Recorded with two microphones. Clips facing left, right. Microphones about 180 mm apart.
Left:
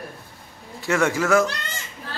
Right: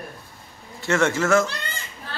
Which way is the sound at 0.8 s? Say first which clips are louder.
Even; 15° left (ahead or behind).